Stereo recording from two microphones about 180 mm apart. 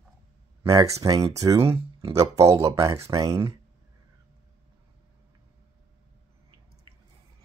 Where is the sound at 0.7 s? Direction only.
20° right (ahead or behind).